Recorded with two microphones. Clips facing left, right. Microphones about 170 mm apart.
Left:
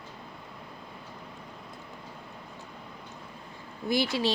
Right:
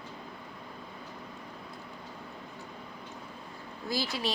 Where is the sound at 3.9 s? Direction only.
20° left (ahead or behind).